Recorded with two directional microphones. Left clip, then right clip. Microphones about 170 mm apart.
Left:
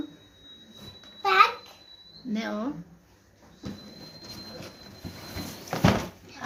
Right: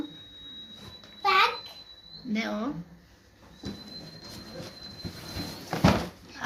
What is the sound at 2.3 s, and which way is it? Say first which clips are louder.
Speech: right 1 dB; 15° left (ahead or behind).